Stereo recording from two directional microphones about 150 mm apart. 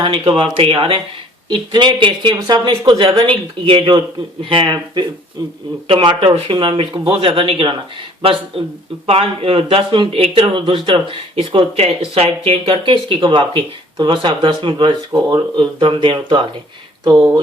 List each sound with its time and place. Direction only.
0.0 s speech: 35° right (ahead or behind)